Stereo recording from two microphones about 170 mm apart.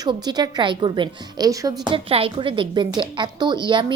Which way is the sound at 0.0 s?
25° right (ahead or behind).